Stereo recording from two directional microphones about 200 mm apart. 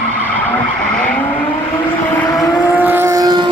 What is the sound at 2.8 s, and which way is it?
Vehicle, 10° right (ahead or behind).